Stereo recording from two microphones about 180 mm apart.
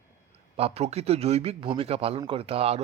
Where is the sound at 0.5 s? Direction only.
35° right (ahead or behind).